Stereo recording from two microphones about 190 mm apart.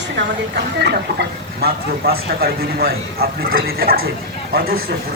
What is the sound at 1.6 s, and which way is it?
A woman's voice, 55° right (ahead or behind).